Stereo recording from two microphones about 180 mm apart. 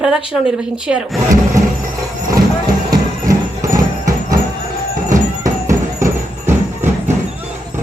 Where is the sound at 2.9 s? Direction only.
20° right (ahead or behind).